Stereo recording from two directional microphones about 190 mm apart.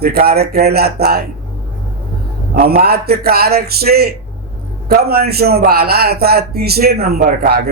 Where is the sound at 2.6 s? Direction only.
55° right (ahead or behind).